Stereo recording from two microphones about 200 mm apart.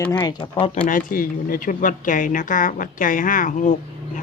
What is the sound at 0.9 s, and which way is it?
Speech, 40° left (ahead or behind).